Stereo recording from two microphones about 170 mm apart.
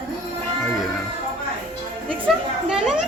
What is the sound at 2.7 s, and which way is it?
Children playing, 5° right (ahead or behind).